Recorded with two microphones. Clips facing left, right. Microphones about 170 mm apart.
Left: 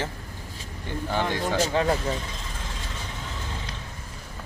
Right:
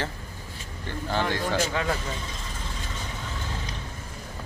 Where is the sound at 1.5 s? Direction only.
35° left (ahead or behind).